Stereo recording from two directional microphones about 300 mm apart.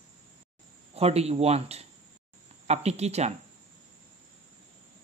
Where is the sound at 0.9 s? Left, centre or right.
Right.